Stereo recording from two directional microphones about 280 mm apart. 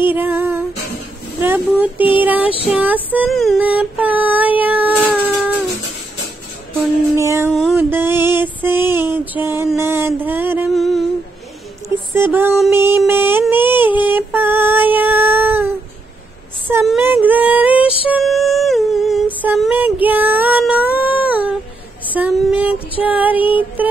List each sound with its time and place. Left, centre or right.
0.1 s music: centre
1.4 s speech: centre
2.4 s a sound: centre
2.7 s female singing: centre
7.2 s speech: centre
7.5 s music: centre
9.1 s mantra: centre
12.1 s music: centre
16.6 s a sound: centre
18.1 s humming: centre
22.1 s a sound: centre
23.0 s music: centre